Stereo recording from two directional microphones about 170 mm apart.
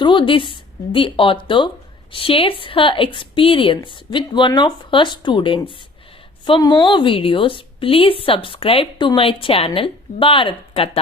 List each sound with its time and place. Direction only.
0.0 s a woman's voice: 30° left (ahead or behind)